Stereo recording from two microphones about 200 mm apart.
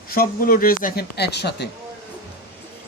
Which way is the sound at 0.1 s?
45° left (ahead or behind).